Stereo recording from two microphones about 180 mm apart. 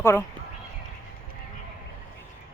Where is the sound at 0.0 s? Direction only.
15° left (ahead or behind).